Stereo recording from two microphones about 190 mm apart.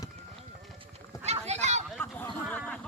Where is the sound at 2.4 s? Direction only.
5° left (ahead or behind).